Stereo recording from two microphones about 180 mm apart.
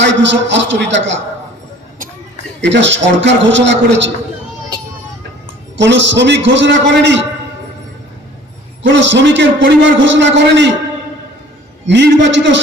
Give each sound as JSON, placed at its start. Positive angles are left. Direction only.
{"t": 0.0, "sound": "a man's voice", "side_deg": -80}
{"t": 2.6, "sound": "a man's voice", "side_deg": -80}
{"t": 5.7, "sound": "a man's voice", "side_deg": -85}
{"t": 8.8, "sound": "a man's voice", "side_deg": -90}
{"t": 11.9, "sound": "a man's voice", "side_deg": -75}